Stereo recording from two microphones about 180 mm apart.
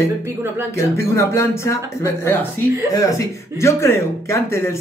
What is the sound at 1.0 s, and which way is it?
Speech, 15° left (ahead or behind).